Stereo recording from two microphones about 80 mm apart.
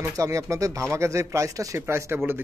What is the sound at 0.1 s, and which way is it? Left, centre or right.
Speech, right.